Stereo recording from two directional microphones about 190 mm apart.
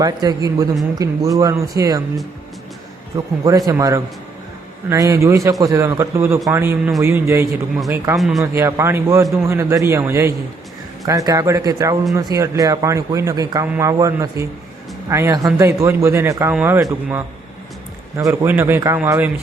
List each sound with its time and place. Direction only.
0.0 s a man's voice: 20° right (ahead or behind)
3.1 s a man's voice: 20° right (ahead or behind)
8.2 s a man's voice: centre (ahead or behind)
8.5 s a man's voice: 15° right (ahead or behind)